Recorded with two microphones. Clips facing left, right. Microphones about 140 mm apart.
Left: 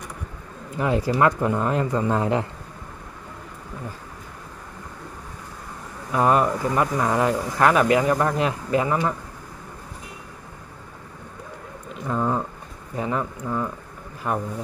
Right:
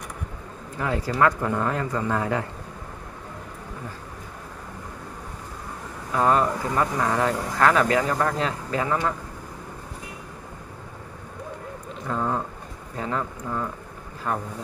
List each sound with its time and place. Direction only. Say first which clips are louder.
0.7 s speech: left 3 dB; 20° left (ahead or behind)
6.1 s speech: left 2 dB; 15° left (ahead or behind)
12.1 s a sound: left 2 dB; 5° left (ahead or behind)
12.9 s speech: left 3 dB; 15° left (ahead or behind)